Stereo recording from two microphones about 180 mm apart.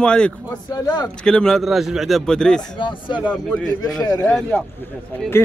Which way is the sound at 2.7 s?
25° left (ahead or behind).